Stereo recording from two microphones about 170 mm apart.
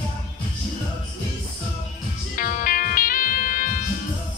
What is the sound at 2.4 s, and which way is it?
Music, 50° left (ahead or behind).